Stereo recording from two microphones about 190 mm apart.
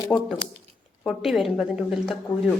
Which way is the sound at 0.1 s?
5° left (ahead or behind).